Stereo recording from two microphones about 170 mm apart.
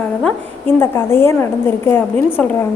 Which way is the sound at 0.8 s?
15° left (ahead or behind).